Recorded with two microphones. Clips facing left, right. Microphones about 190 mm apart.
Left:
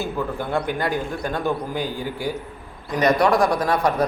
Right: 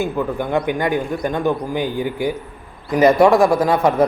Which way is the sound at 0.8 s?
15° right (ahead or behind).